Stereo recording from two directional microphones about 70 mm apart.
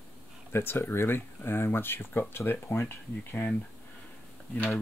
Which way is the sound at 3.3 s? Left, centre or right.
Left.